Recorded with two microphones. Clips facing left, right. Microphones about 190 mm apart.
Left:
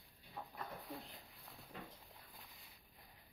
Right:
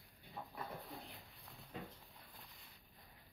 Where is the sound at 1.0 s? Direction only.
Centre (ahead or behind).